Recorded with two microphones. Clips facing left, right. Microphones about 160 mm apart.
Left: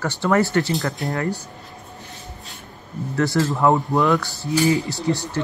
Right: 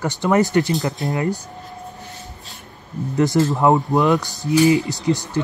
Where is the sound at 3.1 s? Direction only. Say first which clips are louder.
Right 3 dB; 20° right (ahead or behind).